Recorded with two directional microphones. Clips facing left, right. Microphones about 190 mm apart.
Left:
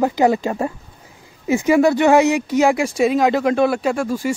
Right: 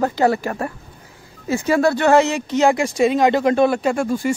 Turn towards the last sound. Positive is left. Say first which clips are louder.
# right 1 dB
turn(degrees=5)  # may be behind; listen again after turning